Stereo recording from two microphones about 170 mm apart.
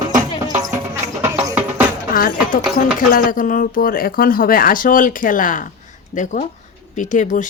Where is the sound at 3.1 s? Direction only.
55° left (ahead or behind).